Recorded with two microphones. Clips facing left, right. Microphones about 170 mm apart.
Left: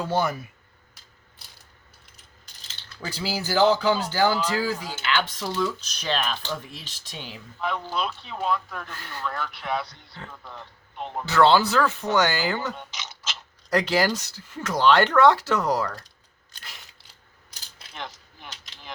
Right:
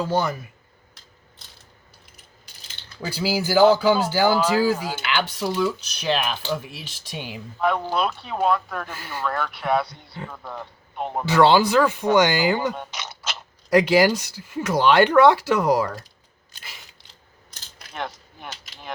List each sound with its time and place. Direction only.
0.1 s speech: 5° left (ahead or behind)
3.0 s speech: 5° right (ahead or behind)
4.4 s speech: 55° right (ahead or behind)
5.0 s speech: 10° right (ahead or behind)
7.6 s speech: 55° right (ahead or behind)
11.3 s speech: 15° right (ahead or behind)
12.7 s a sound: 55° right (ahead or behind)
13.7 s speech: 10° right (ahead or behind)
16.6 s a sound: 5° right (ahead or behind)
17.9 s a sound: 55° right (ahead or behind)